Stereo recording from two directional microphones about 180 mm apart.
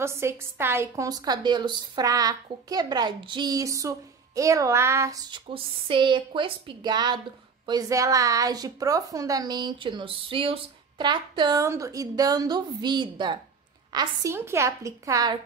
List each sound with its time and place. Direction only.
0.0 s a woman's voice: 15° right (ahead or behind)